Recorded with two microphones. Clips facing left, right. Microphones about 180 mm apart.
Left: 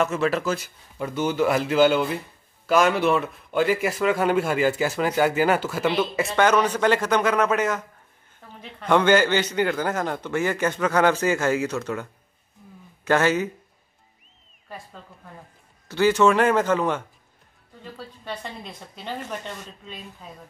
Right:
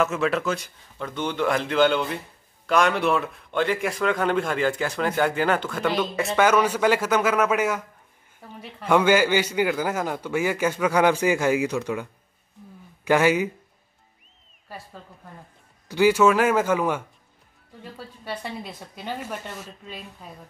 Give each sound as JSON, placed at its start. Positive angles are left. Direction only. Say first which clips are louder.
{"t": 0.0, "sound": "a man's voice", "louder": "even", "side_deg": 0}
{"t": 15.9, "sound": "a man's voice", "louder": "even", "side_deg": -10}